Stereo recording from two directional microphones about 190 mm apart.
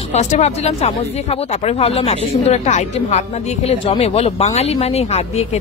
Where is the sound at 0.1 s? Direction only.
35° left (ahead or behind).